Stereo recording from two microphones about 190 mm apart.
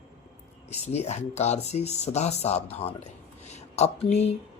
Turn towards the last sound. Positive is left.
turn(degrees=35)  # may be behind; listen again after turning